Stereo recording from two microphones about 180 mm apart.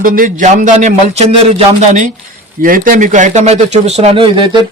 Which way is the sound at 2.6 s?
50° right (ahead or behind).